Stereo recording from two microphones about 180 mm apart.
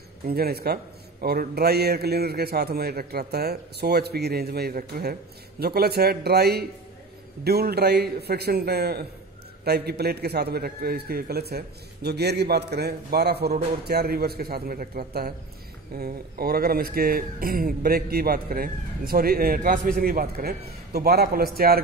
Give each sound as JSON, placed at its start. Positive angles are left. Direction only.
{"t": 0.3, "sound": "a man's voice", "side_deg": -60}